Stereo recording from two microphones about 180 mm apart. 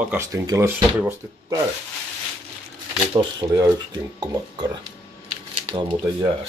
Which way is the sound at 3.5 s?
20° right (ahead or behind).